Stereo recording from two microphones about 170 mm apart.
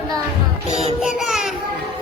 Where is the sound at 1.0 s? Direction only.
Centre (ahead or behind).